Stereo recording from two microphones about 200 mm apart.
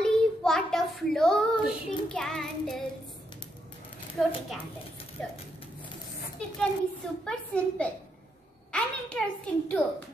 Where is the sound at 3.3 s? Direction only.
25° left (ahead or behind).